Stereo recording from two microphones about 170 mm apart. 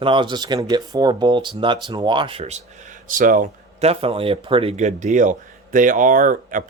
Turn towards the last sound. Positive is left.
turn(degrees=-50)  # may be behind; listen again after turning